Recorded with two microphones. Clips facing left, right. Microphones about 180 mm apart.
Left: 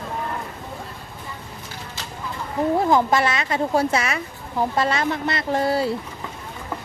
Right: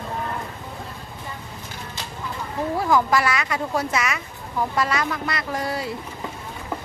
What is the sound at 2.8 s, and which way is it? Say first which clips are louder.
A woman's voice: left 1 dB; 25° left (ahead or behind).